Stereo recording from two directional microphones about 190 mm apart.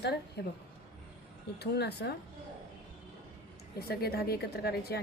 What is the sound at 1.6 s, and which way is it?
Speech, 60° left (ahead or behind).